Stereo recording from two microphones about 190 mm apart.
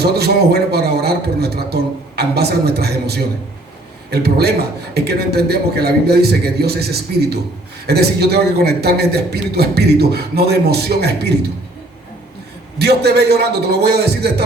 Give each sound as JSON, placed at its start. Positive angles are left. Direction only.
{"t": 0.0, "sound": "a man's voice", "side_deg": -60}
{"t": 12.8, "sound": "a man's voice", "side_deg": -60}